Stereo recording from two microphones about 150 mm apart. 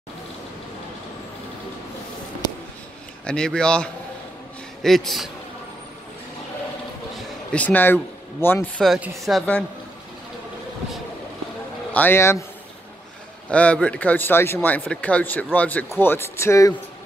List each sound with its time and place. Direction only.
3.3 s speech: 5° left (ahead or behind)
7.5 s speech: 10° left (ahead or behind)
9.1 s speech: centre (ahead or behind)
11.9 s speech: 15° left (ahead or behind)
13.5 s speech: 10° left (ahead or behind)